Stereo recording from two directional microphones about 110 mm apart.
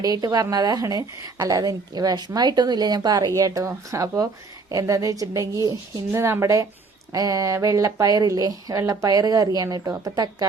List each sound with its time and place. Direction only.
0.0 s a woman's voice: 35° right (ahead or behind)